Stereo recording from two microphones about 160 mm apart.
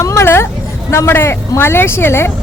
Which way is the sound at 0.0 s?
15° left (ahead or behind).